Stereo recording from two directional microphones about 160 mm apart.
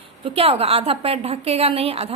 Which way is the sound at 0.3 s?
35° right (ahead or behind).